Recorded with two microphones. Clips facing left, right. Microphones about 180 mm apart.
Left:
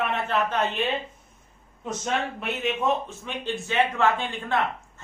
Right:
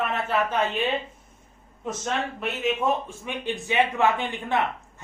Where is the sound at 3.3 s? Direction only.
15° right (ahead or behind).